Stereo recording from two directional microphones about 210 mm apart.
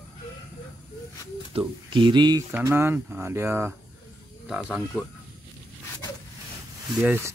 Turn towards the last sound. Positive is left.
turn(degrees=-10)  # may be behind; listen again after turning